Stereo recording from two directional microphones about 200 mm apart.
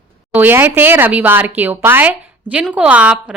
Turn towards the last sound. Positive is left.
turn(degrees=-5)  # may be behind; listen again after turning